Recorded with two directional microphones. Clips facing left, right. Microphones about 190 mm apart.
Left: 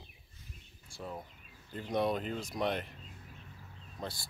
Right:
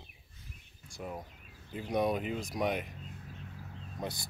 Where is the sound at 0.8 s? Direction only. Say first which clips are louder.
Right 2 dB; 15° right (ahead or behind).